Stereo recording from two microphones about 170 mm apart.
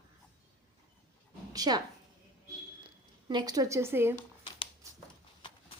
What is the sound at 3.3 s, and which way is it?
Speech, 25° right (ahead or behind).